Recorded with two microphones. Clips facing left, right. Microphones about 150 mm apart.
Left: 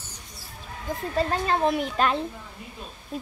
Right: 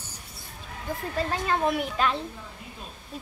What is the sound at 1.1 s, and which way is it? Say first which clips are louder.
Speech: left 3 dB; 30° left (ahead or behind).